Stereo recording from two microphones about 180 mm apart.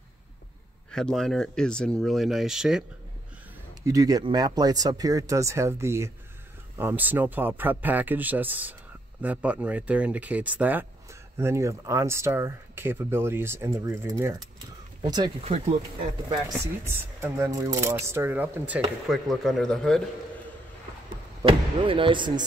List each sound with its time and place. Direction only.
0.9 s speech: centre (ahead or behind)
3.8 s speech: 20° right (ahead or behind)
15.4 s speech: 35° right (ahead or behind)
16.6 s speech: 15° right (ahead or behind)
19.0 s speech: centre (ahead or behind)
21.4 s speech: 30° right (ahead or behind)